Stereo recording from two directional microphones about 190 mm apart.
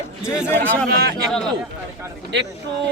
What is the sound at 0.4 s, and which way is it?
Speech, 10° left (ahead or behind).